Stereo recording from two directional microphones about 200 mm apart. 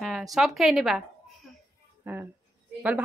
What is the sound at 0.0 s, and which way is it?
A woman's voice, centre (ahead or behind).